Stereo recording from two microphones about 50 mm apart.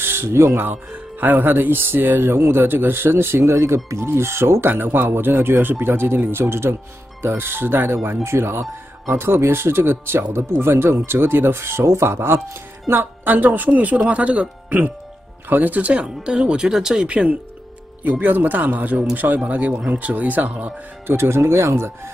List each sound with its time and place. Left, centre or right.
0.0 s a sound: right
1.2 s speech: right
12.9 s speech: right
16.3 s speech: centre
18.2 s speech: right
21.1 s speech: right